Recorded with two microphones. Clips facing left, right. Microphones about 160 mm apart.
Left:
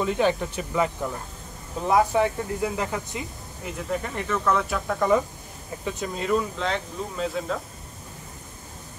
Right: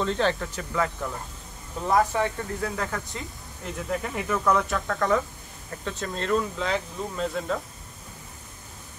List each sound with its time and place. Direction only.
0.0 s speech: 10° left (ahead or behind)
3.6 s speech: centre (ahead or behind)
4.8 s speech: 10° left (ahead or behind)